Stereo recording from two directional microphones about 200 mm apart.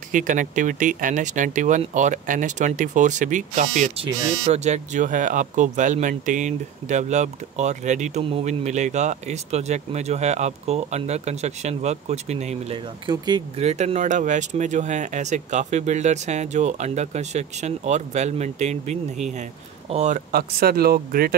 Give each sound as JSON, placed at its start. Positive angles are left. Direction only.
{"t": 0.1, "sound": "speech", "side_deg": -40}
{"t": 13.6, "sound": "speech", "side_deg": -35}